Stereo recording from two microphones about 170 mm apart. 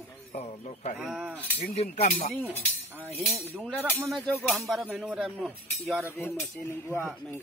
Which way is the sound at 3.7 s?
10° right (ahead or behind).